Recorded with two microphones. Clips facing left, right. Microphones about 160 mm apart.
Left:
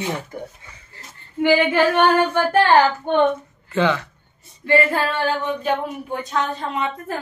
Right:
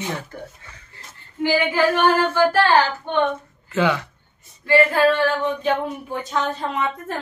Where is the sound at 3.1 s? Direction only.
50° left (ahead or behind).